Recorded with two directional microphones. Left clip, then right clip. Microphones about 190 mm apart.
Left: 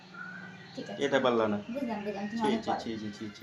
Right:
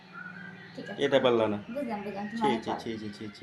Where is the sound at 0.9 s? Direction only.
35° right (ahead or behind).